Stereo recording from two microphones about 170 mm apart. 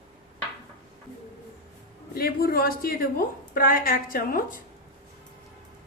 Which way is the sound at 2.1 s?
60° left (ahead or behind).